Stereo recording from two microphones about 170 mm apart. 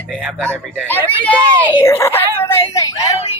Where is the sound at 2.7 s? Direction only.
20° left (ahead or behind).